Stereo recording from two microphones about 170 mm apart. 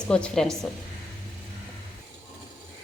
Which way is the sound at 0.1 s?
5° left (ahead or behind).